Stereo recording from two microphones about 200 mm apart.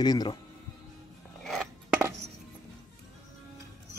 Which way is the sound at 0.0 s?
20° left (ahead or behind).